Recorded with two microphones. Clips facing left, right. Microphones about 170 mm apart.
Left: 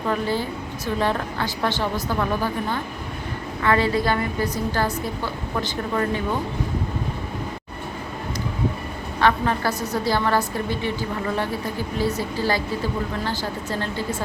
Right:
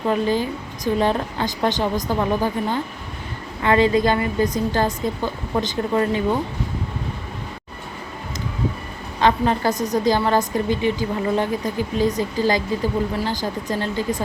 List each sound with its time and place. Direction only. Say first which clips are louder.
0.1 s a woman's voice: right 4 dB; 15° right (ahead or behind)
9.2 s a woman's voice: right 3 dB; 20° right (ahead or behind)